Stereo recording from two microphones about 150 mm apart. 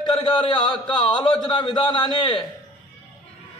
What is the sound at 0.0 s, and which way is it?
A man's voice, 30° left (ahead or behind).